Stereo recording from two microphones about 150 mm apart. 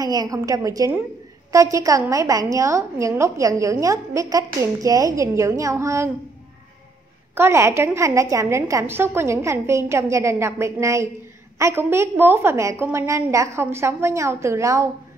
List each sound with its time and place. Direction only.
0.0 s a woman's voice: 25° right (ahead or behind)
7.3 s a woman's voice: 15° right (ahead or behind)